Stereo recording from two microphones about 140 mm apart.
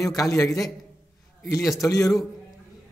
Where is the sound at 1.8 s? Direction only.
20° left (ahead or behind).